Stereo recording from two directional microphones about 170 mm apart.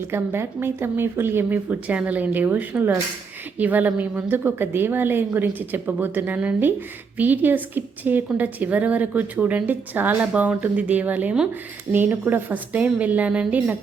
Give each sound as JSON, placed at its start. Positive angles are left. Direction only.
{"t": 0.1, "sound": "a woman's voice", "side_deg": -15}